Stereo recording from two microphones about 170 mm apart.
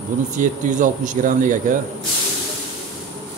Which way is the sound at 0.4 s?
50° right (ahead or behind).